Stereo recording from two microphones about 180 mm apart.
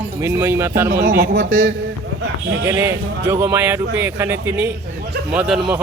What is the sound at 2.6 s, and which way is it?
A man's voice, 15° right (ahead or behind).